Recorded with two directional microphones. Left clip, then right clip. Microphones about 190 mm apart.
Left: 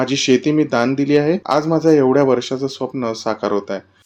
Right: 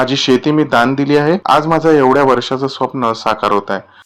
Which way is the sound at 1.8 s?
5° right (ahead or behind).